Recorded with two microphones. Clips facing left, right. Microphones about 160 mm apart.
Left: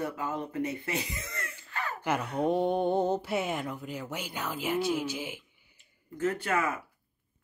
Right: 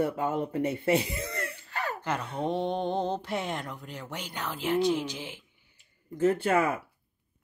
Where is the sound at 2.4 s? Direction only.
5° left (ahead or behind).